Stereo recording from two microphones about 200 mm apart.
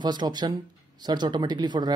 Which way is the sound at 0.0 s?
20° right (ahead or behind).